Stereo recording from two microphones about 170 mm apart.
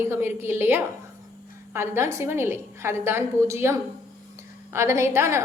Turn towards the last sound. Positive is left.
turn(degrees=-15)  # may be behind; listen again after turning